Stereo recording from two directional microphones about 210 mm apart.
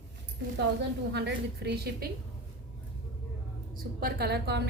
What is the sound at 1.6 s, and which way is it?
Speech, 50° right (ahead or behind).